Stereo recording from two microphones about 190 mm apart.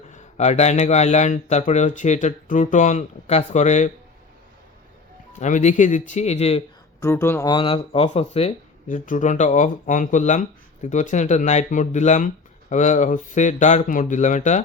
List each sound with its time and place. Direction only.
0.1 s speech: 35° left (ahead or behind)
5.4 s speech: 40° left (ahead or behind)
7.0 s speech: 15° left (ahead or behind); by 14.6 s 40° left (ahead or behind)